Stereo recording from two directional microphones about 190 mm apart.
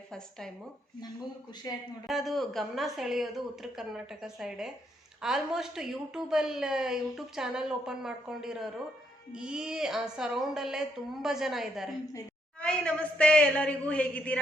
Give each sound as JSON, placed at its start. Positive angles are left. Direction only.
{"t": 0.1, "sound": "speech", "side_deg": 5}
{"t": 1.7, "sound": "speech", "side_deg": 20}
{"t": 2.0, "sound": "a woman's voice", "side_deg": 0}